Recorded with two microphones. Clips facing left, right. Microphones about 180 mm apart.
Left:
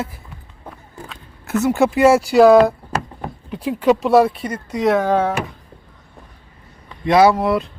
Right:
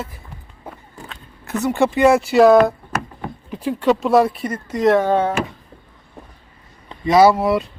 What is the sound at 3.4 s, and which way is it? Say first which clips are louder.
Speech: left 1 dB; centre (ahead or behind).